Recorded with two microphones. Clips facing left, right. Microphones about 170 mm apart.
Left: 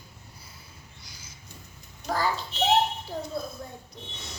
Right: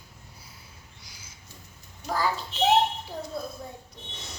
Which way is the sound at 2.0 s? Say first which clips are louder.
Left 1 dB; 20° left (ahead or behind).